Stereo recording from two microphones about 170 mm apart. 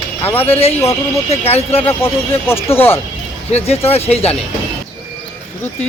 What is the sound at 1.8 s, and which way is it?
Speech, 15° left (ahead or behind).